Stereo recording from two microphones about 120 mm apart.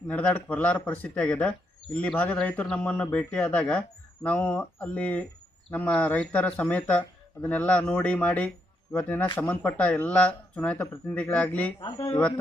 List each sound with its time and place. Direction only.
0.1 s speech: 10° left (ahead or behind)
11.8 s speech: 40° left (ahead or behind)